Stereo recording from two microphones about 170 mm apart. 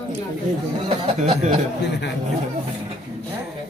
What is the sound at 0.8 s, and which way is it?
Speech, 40° right (ahead or behind).